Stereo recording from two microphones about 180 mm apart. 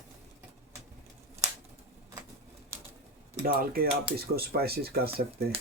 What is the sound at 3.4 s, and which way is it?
Speech, 55° right (ahead or behind).